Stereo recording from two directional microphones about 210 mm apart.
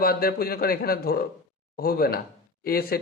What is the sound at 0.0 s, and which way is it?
Speech, 45° left (ahead or behind).